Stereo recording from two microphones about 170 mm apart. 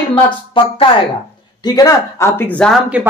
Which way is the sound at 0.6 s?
30° left (ahead or behind).